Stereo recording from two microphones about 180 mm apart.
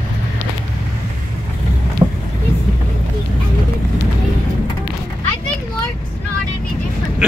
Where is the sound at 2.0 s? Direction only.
20° right (ahead or behind).